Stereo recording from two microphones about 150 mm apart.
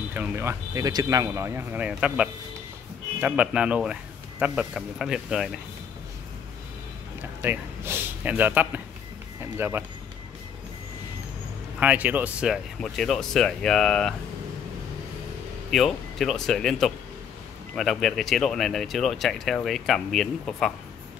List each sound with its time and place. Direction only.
0.1 s speech: 15° right (ahead or behind)
7.4 s a man's voice: 15° right (ahead or behind)
11.8 s speech: 10° right (ahead or behind)
15.7 s speech: centre (ahead or behind)